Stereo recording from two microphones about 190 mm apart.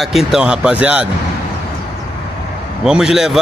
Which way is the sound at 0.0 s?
Centre (ahead or behind).